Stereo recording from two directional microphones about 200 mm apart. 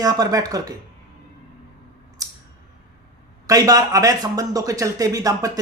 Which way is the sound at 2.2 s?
15° right (ahead or behind).